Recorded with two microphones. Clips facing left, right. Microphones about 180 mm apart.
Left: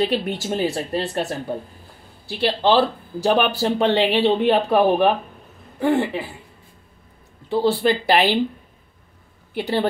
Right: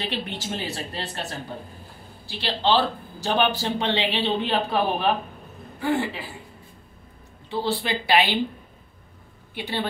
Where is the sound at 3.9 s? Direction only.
50° left (ahead or behind).